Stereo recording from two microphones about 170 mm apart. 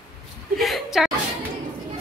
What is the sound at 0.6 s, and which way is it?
Speech, centre (ahead or behind).